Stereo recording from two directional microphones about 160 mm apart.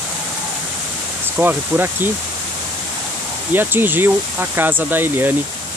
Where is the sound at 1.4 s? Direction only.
10° right (ahead or behind).